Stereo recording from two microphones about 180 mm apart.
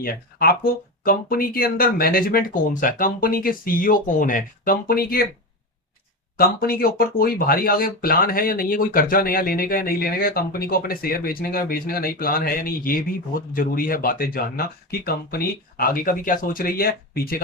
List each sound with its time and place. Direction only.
0.0 s speech: 55° left (ahead or behind)
6.3 s speech: 55° left (ahead or behind)